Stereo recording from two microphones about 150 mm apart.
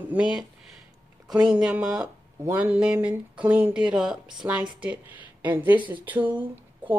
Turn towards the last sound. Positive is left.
turn(degrees=-10)  # may be behind; listen again after turning